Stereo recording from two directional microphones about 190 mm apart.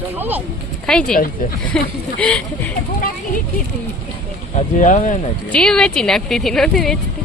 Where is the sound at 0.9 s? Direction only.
5° left (ahead or behind).